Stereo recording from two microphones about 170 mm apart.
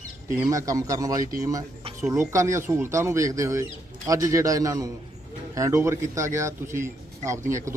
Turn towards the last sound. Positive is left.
turn(degrees=-15)  # may be behind; listen again after turning